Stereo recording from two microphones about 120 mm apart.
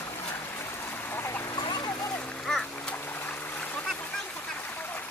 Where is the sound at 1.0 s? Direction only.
20° left (ahead or behind).